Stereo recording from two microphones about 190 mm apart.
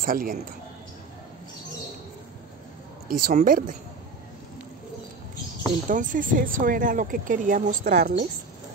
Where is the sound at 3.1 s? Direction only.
45° right (ahead or behind).